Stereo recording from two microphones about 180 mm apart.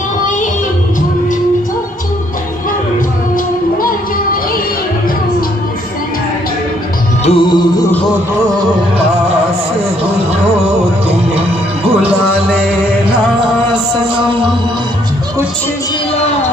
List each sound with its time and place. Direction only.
7.2 s music: 25° left (ahead or behind)